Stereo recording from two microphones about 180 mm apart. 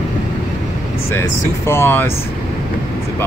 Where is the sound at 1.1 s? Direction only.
15° left (ahead or behind).